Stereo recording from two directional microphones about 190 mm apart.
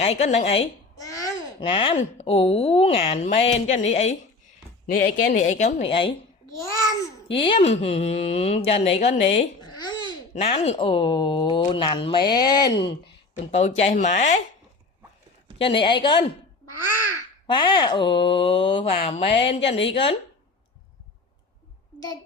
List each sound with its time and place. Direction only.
0.0 s speech: 35° left (ahead or behind)
0.9 s a child's voice: 20° left (ahead or behind); by 4.1 s 35° left (ahead or behind)
4.9 s speech: 60° left (ahead or behind)
5.3 s speech: 40° left (ahead or behind)
7.3 s speech: 25° left (ahead or behind)
13.4 s speech: 35° left (ahead or behind)
15.5 s speech: 30° left (ahead or behind)
17.4 s speech: 25° left (ahead or behind)